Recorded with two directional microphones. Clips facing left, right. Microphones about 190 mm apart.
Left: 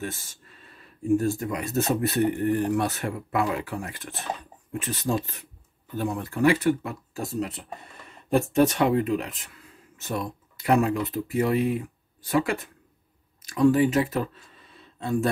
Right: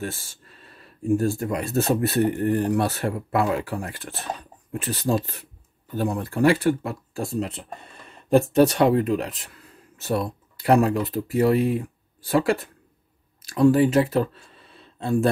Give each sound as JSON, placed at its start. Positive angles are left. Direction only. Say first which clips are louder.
{"t": 0.0, "sound": "speech", "louder": "right 2 dB", "side_deg": -30}